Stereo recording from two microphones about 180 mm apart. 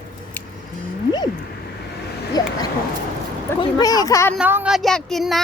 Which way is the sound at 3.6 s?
20° left (ahead or behind).